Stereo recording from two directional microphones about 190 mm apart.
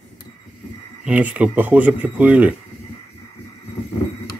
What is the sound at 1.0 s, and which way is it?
Speech, 5° right (ahead or behind).